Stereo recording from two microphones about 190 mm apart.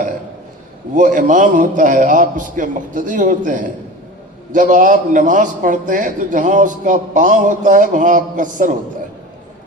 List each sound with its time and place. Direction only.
0.9 s a man's voice: 40° right (ahead or behind)